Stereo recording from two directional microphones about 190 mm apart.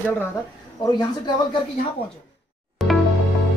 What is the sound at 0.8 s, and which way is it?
Speech, 20° left (ahead or behind).